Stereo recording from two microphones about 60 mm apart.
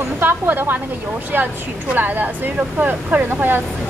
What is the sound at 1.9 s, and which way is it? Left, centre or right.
A woman's voice, right.